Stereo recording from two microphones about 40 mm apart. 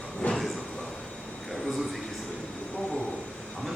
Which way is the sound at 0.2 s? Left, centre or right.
Left.